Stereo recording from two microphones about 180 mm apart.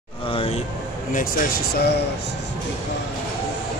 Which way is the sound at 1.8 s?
65° left (ahead or behind).